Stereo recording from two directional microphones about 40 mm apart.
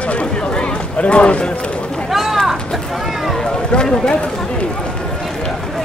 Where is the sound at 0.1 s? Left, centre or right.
Left.